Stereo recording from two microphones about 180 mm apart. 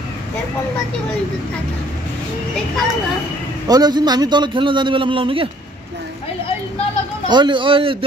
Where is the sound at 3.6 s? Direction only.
20° right (ahead or behind).